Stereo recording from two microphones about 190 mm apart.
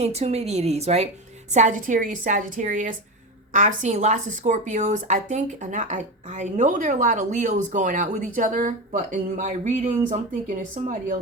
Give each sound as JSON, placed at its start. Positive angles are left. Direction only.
{"t": 0.0, "sound": "a woman's voice", "side_deg": -35}